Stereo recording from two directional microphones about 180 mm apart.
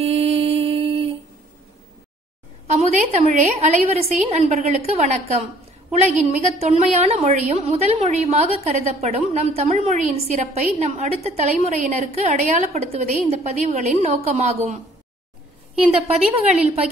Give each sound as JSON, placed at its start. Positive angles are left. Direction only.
{"t": 0.0, "sound": "music", "side_deg": -35}
{"t": 2.7, "sound": "a woman's voice", "side_deg": -40}
{"t": 15.9, "sound": "a woman's voice", "side_deg": -35}